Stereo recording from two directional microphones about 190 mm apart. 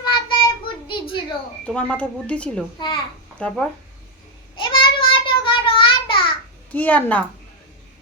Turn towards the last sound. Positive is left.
turn(degrees=10)  # may be behind; listen again after turning